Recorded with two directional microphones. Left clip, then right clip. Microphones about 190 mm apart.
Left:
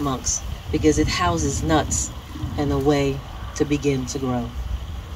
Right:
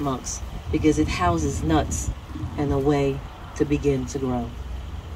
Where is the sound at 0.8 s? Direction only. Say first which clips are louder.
Left 2 dB; 50° left (ahead or behind).